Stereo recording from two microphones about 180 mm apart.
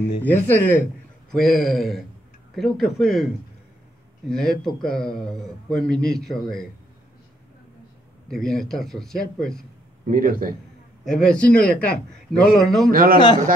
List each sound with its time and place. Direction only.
0.2 s a man's voice: 10° left (ahead or behind)
4.3 s a man's voice: 5° left (ahead or behind)
8.3 s a man's voice: centre (ahead or behind)
10.0 s a man's voice: 50° right (ahead or behind)
11.1 s a man's voice: 5° left (ahead or behind)
12.9 s a man's voice: 55° right (ahead or behind)